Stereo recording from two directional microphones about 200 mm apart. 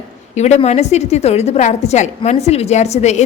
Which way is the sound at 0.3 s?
35° left (ahead or behind).